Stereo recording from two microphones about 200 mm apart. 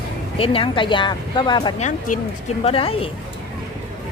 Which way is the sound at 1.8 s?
40° left (ahead or behind).